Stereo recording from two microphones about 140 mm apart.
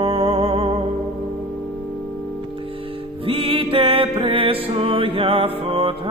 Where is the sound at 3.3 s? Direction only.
40° right (ahead or behind).